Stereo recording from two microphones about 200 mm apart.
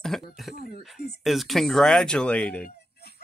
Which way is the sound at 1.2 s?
Centre (ahead or behind).